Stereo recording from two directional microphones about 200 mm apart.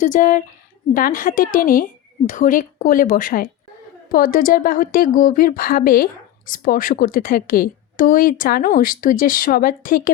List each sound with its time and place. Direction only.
0.0 s a woman's voice: 40° left (ahead or behind)